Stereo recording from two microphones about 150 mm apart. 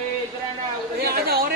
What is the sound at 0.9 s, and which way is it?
Speech, 90° right.